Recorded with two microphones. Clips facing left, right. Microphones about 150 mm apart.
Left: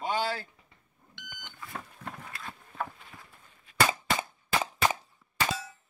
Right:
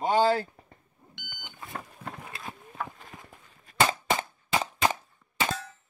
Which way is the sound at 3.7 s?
40° right (ahead or behind).